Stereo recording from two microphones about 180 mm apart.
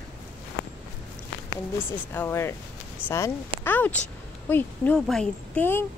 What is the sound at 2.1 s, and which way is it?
Speech, 15° left (ahead or behind).